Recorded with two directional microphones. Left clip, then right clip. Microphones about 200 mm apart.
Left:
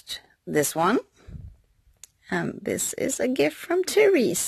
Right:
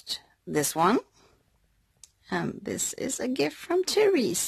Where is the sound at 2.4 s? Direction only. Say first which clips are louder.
Left 4 dB; 5° left (ahead or behind).